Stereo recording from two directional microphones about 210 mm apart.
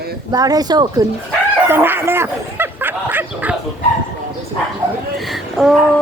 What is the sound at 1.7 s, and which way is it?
Bow-wow, 10° right (ahead or behind).